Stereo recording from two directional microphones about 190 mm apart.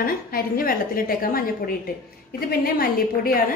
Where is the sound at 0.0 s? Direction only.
50° left (ahead or behind).